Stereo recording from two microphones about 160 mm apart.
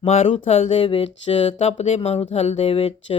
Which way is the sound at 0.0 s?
40° left (ahead or behind).